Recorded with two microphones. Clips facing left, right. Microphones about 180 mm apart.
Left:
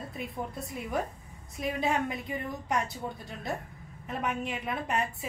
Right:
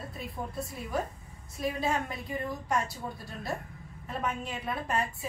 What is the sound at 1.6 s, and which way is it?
A woman's voice, 20° left (ahead or behind).